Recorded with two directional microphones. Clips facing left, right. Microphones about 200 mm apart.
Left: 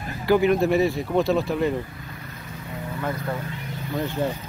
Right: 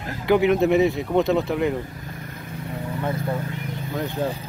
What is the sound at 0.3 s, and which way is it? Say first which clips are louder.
Speech: right 1 dB; 20° right (ahead or behind).